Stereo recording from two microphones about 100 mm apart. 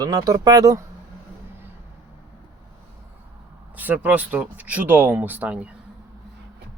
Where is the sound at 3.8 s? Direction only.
15° right (ahead or behind).